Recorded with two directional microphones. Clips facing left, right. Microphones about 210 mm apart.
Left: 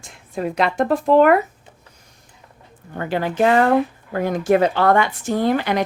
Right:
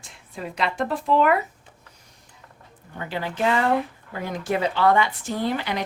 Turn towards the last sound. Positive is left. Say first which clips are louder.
# left 7 dB
turn(degrees=50)  # may be behind; listen again after turning